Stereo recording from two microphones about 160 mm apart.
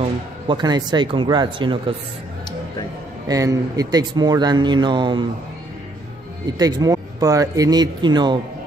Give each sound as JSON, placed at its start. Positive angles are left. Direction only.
{"t": 0.0, "sound": "speech", "side_deg": -30}
{"t": 3.3, "sound": "speech", "side_deg": -20}
{"t": 6.6, "sound": "speech", "side_deg": -25}